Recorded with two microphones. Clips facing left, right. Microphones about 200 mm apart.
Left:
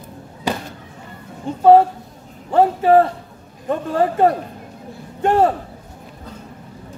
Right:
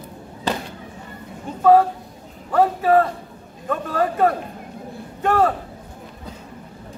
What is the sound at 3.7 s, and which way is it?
A man's voice, 25° left (ahead or behind).